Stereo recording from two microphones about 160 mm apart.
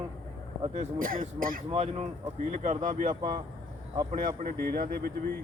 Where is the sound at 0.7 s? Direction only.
55° right (ahead or behind).